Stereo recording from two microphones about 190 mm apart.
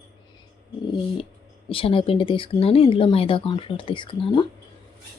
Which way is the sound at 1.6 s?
30° left (ahead or behind).